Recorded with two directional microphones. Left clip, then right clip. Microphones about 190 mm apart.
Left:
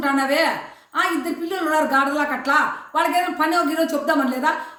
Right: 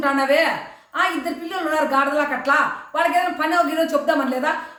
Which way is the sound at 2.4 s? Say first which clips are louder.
Right 1 dB; 20° right (ahead or behind).